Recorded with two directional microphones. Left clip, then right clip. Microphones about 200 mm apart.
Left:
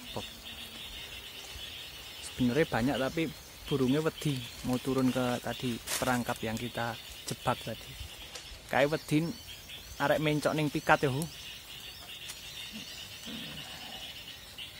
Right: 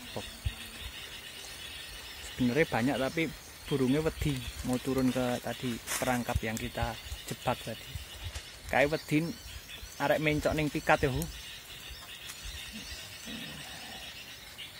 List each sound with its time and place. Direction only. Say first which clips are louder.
2.4 s speech: right 1 dB; 10° left (ahead or behind)
8.6 s speech: even; 15° left (ahead or behind)